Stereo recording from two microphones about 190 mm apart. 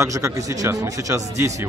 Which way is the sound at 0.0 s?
15° right (ahead or behind).